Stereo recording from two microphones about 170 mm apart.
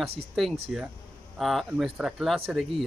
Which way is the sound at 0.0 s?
Centre (ahead or behind).